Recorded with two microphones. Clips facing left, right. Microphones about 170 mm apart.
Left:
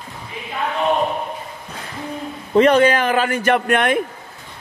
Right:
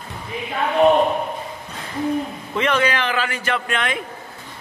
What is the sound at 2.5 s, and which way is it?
A man's voice, 40° left (ahead or behind).